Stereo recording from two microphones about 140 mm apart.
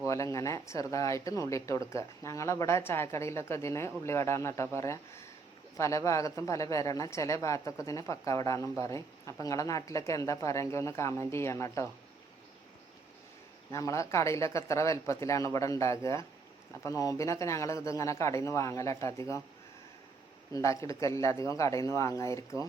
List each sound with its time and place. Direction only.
0.0 s speech: 20° left (ahead or behind)
13.7 s speech: 20° left (ahead or behind)
20.5 s speech: 20° left (ahead or behind)